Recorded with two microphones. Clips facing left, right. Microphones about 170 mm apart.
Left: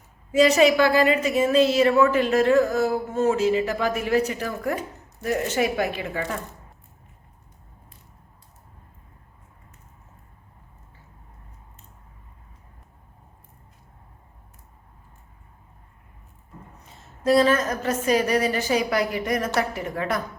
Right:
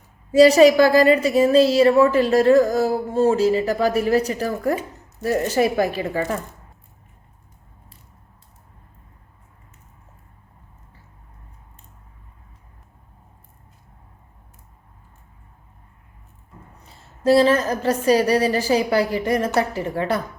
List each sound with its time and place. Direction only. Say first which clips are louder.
0.3 s a woman's voice: right 6 dB; 35° right (ahead or behind)
16.9 s a woman's voice: right 3 dB; 30° right (ahead or behind)